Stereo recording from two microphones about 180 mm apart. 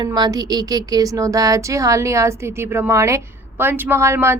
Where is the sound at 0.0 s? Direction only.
20° right (ahead or behind).